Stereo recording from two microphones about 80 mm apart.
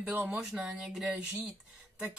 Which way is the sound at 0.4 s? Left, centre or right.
Centre.